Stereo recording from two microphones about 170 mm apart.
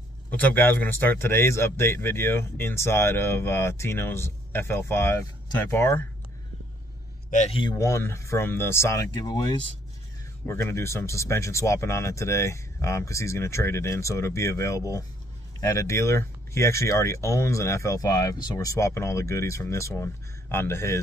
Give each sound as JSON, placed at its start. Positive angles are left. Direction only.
{"t": 0.3, "sound": "speech", "side_deg": 10}
{"t": 7.2, "sound": "a man's voice", "side_deg": 45}
{"t": 7.5, "sound": "speech", "side_deg": 25}